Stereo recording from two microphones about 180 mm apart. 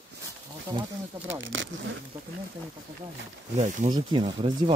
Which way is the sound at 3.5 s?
40° right (ahead or behind).